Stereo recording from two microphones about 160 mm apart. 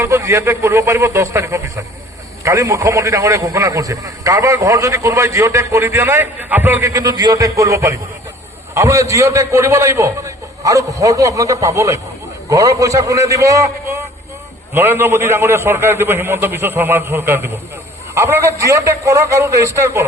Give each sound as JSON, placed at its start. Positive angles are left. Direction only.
{"t": 0.0, "sound": "a man's voice", "side_deg": -15}